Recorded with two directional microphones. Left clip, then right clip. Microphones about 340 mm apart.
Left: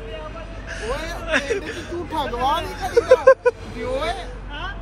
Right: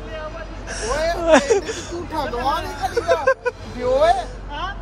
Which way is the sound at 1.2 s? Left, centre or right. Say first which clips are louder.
Right 8 dB; centre.